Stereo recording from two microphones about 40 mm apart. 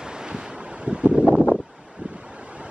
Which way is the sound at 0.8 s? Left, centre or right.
Right.